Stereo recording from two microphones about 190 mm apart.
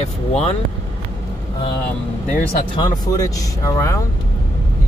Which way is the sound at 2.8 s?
20° left (ahead or behind).